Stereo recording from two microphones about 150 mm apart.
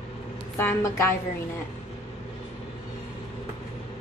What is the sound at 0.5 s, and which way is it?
Speech, 15° left (ahead or behind).